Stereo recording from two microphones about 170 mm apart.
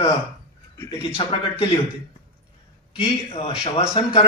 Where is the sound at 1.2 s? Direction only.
30° left (ahead or behind).